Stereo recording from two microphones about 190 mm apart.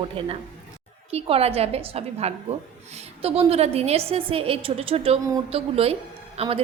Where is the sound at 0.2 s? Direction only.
30° right (ahead or behind).